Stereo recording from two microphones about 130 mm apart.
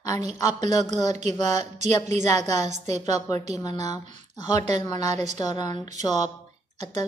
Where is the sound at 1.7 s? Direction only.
60° right (ahead or behind).